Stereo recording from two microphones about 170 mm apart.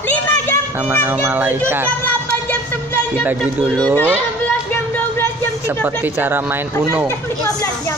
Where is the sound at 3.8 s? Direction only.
10° left (ahead or behind).